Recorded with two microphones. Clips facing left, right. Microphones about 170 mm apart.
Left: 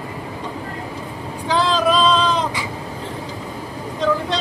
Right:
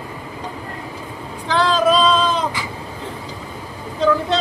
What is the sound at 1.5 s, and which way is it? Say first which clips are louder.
Vehicle: right 2 dB; centre (ahead or behind).